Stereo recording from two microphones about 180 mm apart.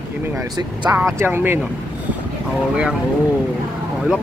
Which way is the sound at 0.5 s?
15° right (ahead or behind).